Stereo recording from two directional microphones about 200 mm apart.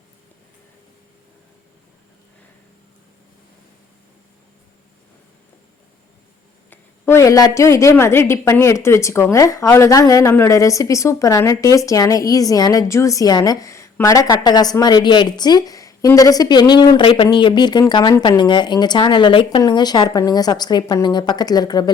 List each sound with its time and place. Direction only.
6.7 s a woman's voice: 10° left (ahead or behind)